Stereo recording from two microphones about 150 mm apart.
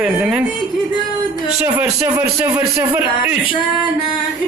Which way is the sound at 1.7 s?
15° right (ahead or behind).